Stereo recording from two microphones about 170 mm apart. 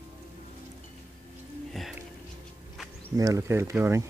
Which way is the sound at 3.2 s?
20° right (ahead or behind).